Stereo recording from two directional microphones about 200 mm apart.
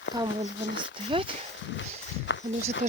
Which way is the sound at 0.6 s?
60° left (ahead or behind).